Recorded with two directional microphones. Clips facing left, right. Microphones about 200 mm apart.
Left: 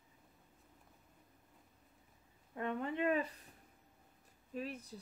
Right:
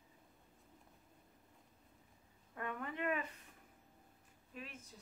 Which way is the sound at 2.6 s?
25° left (ahead or behind).